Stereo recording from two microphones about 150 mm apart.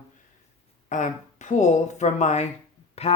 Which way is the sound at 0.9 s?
55° left (ahead or behind).